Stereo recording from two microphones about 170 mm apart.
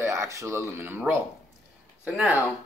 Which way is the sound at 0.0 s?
15° right (ahead or behind).